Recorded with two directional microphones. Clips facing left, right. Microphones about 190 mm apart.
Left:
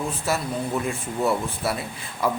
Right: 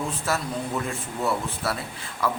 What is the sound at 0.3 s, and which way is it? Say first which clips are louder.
Speech: left 2 dB; 10° left (ahead or behind).